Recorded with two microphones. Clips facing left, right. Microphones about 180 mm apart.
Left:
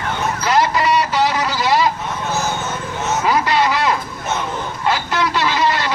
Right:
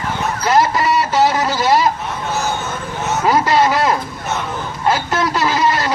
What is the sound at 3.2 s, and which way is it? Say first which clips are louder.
Speech: right 3 dB; 40° right (ahead or behind).